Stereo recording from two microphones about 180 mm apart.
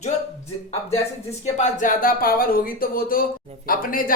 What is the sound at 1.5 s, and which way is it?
Speech, 40° left (ahead or behind).